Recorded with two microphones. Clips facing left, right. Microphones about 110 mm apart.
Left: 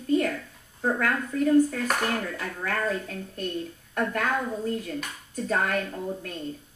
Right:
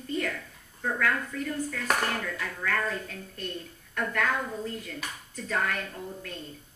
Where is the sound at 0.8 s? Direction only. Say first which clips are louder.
Left 3 dB; 40° left (ahead or behind).